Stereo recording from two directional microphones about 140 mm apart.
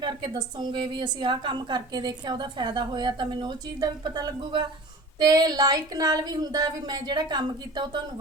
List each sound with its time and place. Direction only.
0.0 s a woman's voice: 30° right (ahead or behind)